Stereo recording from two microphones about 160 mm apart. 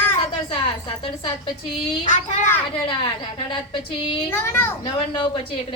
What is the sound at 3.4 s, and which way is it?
Speech, 30° left (ahead or behind).